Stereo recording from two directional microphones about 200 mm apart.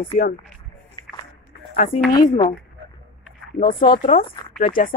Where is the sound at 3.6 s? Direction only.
45° left (ahead or behind).